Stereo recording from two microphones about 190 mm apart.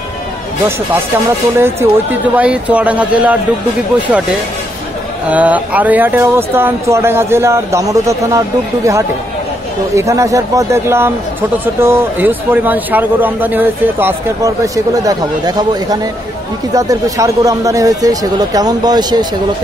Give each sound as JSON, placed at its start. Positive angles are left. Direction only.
{"t": 1.6, "sound": "a man's voice", "side_deg": -10}
{"t": 5.3, "sound": "a man's voice", "side_deg": -10}